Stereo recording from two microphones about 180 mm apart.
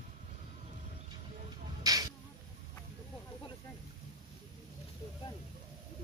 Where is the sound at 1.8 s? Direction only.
20° right (ahead or behind).